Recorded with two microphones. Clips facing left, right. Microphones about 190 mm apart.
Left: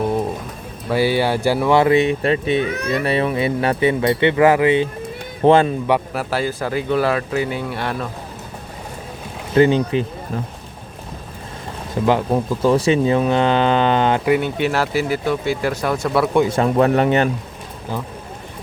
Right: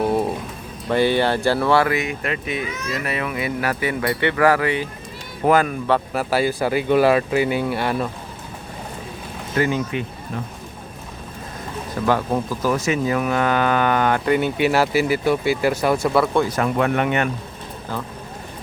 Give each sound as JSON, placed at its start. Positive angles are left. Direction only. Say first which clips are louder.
{"t": 0.9, "sound": "speech", "louder": "even", "side_deg": 5}
{"t": 6.1, "sound": "speech", "louder": "right 2 dB", "side_deg": -5}
{"t": 9.6, "sound": "speech", "louder": "left 7 dB", "side_deg": 30}
{"t": 12.0, "sound": "speech", "louder": "left 3 dB", "side_deg": 20}
{"t": 14.3, "sound": "speech", "louder": "left 1 dB", "side_deg": 0}
{"t": 16.2, "sound": "speech", "louder": "left 3 dB", "side_deg": 15}
{"t": 16.5, "sound": "speech", "louder": "left 4 dB", "side_deg": 30}